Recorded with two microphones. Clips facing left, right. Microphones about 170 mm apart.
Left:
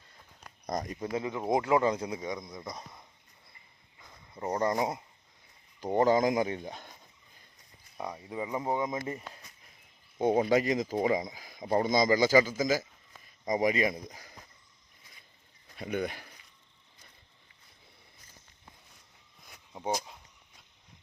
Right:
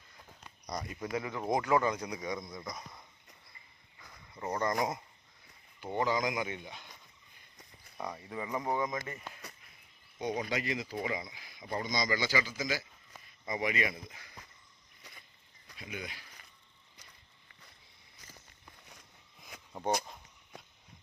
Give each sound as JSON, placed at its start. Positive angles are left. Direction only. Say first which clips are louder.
{"t": 0.7, "sound": "speech", "louder": "left 6 dB", "side_deg": 45}
{"t": 0.9, "sound": "speech", "louder": "left 3 dB", "side_deg": 25}
{"t": 4.4, "sound": "speech", "louder": "left 3 dB", "side_deg": 30}
{"t": 5.8, "sound": "speech", "louder": "left 7 dB", "side_deg": 40}
{"t": 7.9, "sound": "speech", "louder": "left 3 dB", "side_deg": 10}
{"t": 10.2, "sound": "speech", "louder": "left 10 dB", "side_deg": 50}
{"t": 15.0, "sound": "a sound", "louder": "right 6 dB", "side_deg": -75}
{"t": 15.8, "sound": "speech", "louder": "left 11 dB", "side_deg": 55}
{"t": 19.5, "sound": "a sound", "louder": "right 7 dB", "side_deg": -90}